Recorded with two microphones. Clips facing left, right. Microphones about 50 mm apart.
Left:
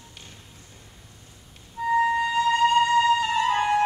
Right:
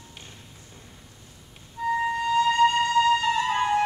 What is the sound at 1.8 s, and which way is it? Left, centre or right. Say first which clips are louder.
Music: left 3 dB; centre.